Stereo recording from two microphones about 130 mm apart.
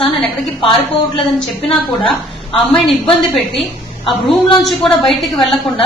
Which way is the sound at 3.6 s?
40° left (ahead or behind).